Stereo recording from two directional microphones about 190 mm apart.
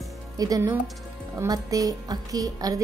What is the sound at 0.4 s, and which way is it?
A woman's voice, 20° right (ahead or behind).